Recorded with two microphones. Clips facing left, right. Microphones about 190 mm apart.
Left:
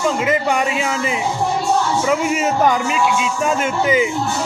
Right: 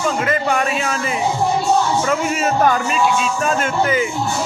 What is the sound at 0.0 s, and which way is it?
Speech, 20° left (ahead or behind).